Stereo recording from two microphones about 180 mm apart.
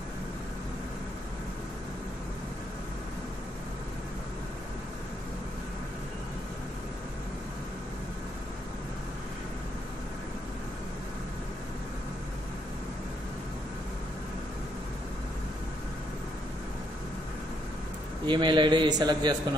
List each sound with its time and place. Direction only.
18.2 s a man's voice: 25° right (ahead or behind)